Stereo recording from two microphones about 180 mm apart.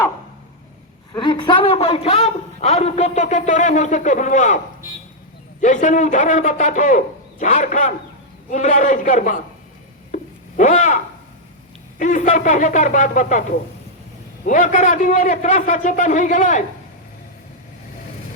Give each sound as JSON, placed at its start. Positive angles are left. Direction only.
{"t": 1.1, "sound": "a man's voice", "side_deg": 25}
{"t": 10.6, "sound": "a man's voice", "side_deg": 45}
{"t": 14.4, "sound": "a man's voice", "side_deg": 45}